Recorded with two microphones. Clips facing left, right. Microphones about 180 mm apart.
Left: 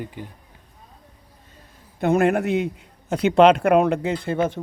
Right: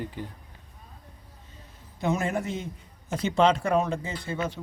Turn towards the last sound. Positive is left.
turn(degrees=55)  # may be behind; listen again after turning